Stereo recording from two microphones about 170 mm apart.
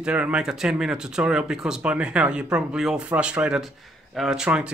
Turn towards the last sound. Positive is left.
turn(degrees=-5)  # may be behind; listen again after turning